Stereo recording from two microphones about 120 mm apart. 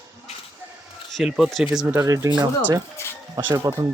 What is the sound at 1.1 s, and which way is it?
Speech, 5° right (ahead or behind).